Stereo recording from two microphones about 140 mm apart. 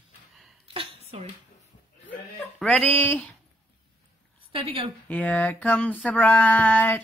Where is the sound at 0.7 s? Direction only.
45° right (ahead or behind).